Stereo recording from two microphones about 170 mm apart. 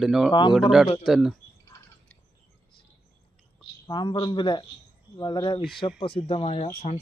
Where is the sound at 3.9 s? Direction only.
25° left (ahead or behind).